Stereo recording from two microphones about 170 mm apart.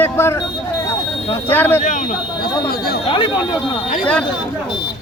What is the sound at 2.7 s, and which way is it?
Speech, 65° left (ahead or behind).